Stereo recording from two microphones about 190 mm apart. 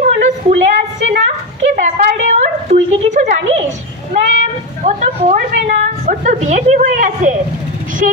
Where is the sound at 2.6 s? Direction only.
40° right (ahead or behind).